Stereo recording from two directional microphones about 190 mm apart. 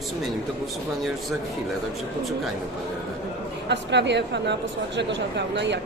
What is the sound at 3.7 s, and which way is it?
A woman's voice, 65° right (ahead or behind).